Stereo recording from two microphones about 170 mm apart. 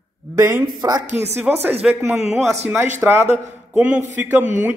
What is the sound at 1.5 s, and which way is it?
Speech, 10° right (ahead or behind).